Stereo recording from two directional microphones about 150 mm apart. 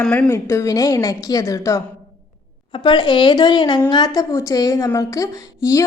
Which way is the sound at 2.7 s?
35° left (ahead or behind).